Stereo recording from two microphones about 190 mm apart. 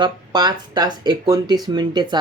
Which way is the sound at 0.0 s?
20° right (ahead or behind).